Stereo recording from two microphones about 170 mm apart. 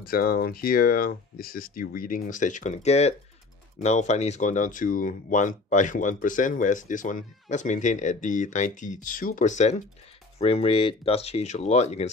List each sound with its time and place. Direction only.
0.0 s speech: 60° left (ahead or behind); by 9.8 s 45° left (ahead or behind)
10.4 s speech: 35° left (ahead or behind)